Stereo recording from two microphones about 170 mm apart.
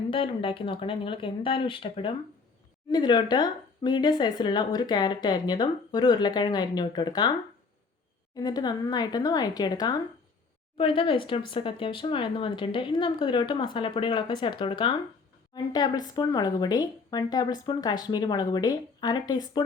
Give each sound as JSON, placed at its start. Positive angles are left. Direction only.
{"t": 0.1, "sound": "speech", "side_deg": 30}
{"t": 8.4, "sound": "speech", "side_deg": 25}